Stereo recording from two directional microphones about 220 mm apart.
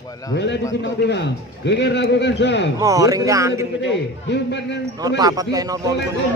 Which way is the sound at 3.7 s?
55° left (ahead or behind).